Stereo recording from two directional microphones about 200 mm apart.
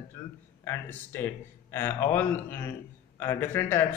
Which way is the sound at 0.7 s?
10° left (ahead or behind).